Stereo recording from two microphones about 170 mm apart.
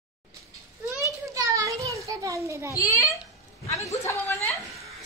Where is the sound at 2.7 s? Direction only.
20° left (ahead or behind).